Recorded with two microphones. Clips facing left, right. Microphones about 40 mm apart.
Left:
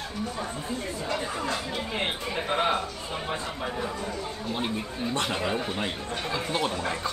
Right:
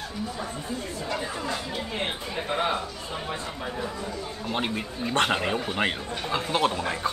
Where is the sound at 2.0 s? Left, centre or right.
Centre.